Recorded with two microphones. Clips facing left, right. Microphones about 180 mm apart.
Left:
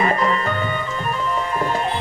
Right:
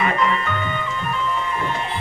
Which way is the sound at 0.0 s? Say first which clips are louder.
Left 2 dB; 35° left (ahead or behind).